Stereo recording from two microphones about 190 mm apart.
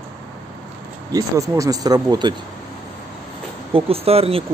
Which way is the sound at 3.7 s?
30° right (ahead or behind).